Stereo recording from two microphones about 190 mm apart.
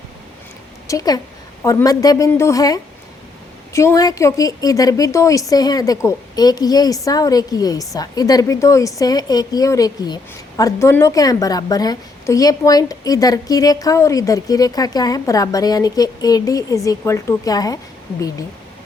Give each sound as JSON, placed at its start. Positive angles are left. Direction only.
{"t": 0.9, "sound": "a woman's voice", "side_deg": 20}